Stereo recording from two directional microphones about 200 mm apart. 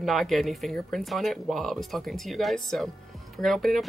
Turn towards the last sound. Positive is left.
turn(degrees=0)  # may be behind; listen again after turning